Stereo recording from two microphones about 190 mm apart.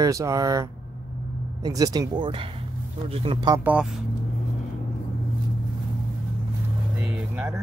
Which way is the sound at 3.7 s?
5° right (ahead or behind).